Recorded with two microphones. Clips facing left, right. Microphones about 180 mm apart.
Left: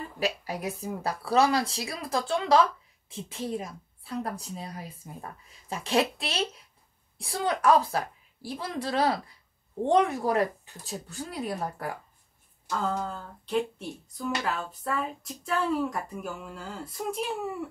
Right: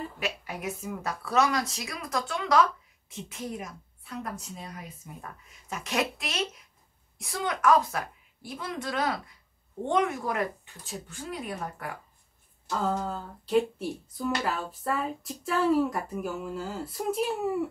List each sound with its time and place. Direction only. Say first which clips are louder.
0.2 s a woman's voice: left 6 dB; 35° left (ahead or behind)
12.6 s speech: right 1 dB; 5° right (ahead or behind)